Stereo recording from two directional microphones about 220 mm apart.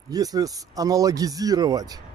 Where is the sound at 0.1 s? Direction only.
15° right (ahead or behind).